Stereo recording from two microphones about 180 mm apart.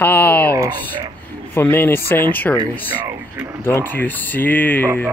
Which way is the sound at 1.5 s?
10° left (ahead or behind).